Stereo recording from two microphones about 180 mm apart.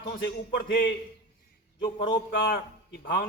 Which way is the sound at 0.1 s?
65° left (ahead or behind).